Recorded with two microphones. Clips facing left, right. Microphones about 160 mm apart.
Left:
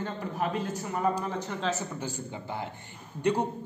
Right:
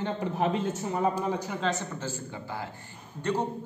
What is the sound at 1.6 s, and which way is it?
Speech, centre (ahead or behind).